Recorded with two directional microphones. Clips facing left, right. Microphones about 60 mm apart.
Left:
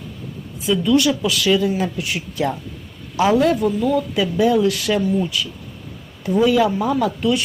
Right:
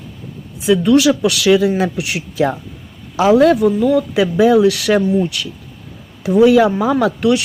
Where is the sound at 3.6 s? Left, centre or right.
Right.